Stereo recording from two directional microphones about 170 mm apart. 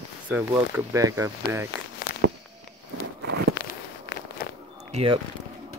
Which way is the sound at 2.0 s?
50° left (ahead or behind).